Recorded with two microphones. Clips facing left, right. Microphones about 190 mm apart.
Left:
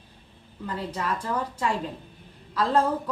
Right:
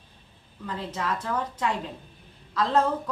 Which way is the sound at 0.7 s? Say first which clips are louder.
Left 1 dB; 10° left (ahead or behind).